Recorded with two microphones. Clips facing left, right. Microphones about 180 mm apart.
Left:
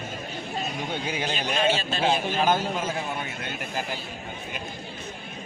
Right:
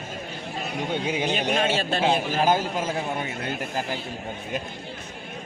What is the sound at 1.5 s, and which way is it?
Speech, 60° right (ahead or behind).